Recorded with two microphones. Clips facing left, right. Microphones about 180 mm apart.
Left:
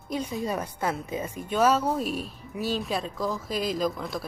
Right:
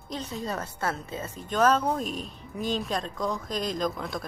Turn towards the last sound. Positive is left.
turn(degrees=0)  # may be behind; listen again after turning